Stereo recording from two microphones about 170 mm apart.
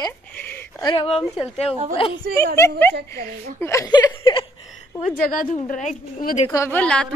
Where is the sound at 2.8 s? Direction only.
10° left (ahead or behind); by 4.5 s 30° left (ahead or behind).